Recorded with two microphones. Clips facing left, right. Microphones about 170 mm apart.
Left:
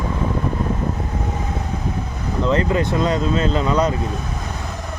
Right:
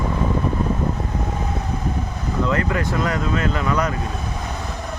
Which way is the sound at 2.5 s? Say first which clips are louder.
Left 6 dB; 25° left (ahead or behind).